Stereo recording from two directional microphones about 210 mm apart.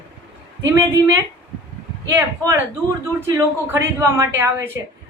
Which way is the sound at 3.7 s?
15° right (ahead or behind).